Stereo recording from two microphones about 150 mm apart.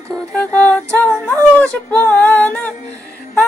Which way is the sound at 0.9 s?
10° left (ahead or behind).